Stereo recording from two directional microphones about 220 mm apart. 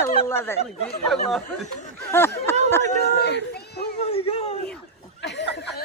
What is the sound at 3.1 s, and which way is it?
Children playing, 50° left (ahead or behind).